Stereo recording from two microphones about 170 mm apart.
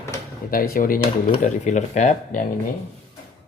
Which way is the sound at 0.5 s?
55° left (ahead or behind).